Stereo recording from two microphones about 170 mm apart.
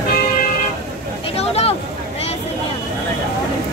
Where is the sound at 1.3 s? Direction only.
35° left (ahead or behind).